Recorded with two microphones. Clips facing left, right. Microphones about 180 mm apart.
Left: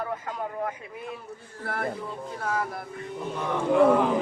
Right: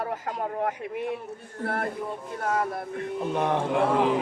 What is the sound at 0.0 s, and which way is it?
Speech, 40° right (ahead or behind).